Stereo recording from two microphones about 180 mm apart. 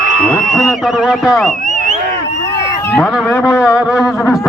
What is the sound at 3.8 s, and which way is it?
Speech, 5° right (ahead or behind).